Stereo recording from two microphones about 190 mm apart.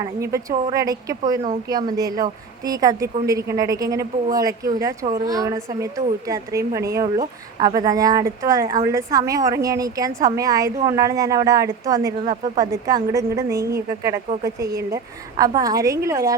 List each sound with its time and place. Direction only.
0.0 s speech: 15° right (ahead or behind)